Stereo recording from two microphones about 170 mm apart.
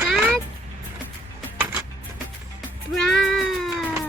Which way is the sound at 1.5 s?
10° right (ahead or behind).